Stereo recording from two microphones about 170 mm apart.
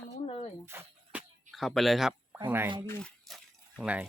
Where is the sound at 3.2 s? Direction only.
Centre (ahead or behind).